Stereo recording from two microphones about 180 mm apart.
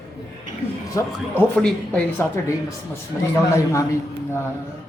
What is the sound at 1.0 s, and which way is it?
Speech, 15° left (ahead or behind).